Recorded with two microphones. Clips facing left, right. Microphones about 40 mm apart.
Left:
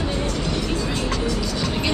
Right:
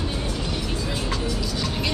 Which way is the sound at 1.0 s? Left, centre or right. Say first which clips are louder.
Left 3 dB; centre.